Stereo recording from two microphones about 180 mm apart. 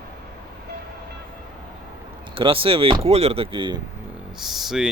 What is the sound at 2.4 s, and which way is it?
Speech, 30° right (ahead or behind).